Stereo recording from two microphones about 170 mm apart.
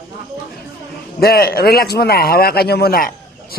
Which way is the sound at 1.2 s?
65° left (ahead or behind).